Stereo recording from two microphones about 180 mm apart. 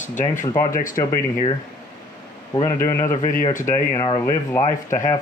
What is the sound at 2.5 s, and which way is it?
A man's voice, 20° left (ahead or behind).